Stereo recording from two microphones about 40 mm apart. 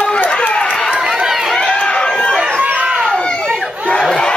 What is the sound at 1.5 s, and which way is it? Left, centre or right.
Run, left.